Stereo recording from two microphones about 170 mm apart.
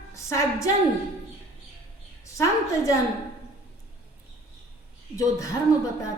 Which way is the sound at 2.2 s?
20° left (ahead or behind).